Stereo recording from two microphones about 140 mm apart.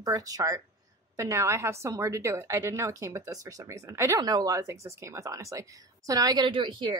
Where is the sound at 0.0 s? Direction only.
25° right (ahead or behind).